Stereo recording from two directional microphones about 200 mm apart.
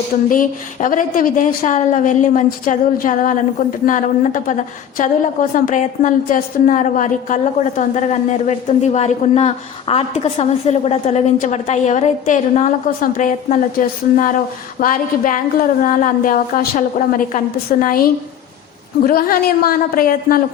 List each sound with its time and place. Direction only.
0.3 s a woman's voice: 45° left (ahead or behind)